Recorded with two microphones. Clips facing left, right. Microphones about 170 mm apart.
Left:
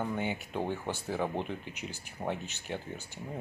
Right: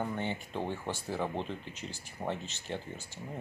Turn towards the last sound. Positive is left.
turn(degrees=15)  # may be behind; listen again after turning